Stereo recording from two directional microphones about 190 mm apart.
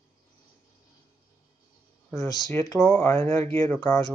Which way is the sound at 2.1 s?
20° left (ahead or behind).